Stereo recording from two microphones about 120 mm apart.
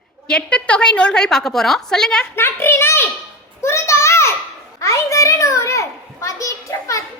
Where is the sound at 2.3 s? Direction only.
20° left (ahead or behind).